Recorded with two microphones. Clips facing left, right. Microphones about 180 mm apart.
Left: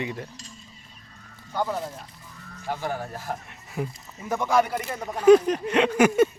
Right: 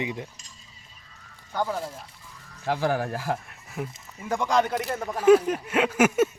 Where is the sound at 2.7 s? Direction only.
90° right.